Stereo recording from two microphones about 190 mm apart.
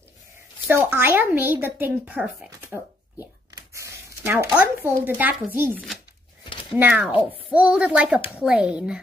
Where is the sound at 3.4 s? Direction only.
15° right (ahead or behind).